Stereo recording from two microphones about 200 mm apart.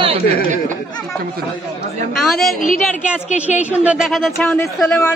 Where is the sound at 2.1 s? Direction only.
Centre (ahead or behind).